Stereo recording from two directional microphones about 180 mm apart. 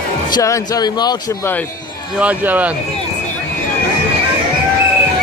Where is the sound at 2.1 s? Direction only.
10° right (ahead or behind).